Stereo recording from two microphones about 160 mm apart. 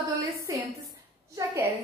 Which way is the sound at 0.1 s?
20° right (ahead or behind).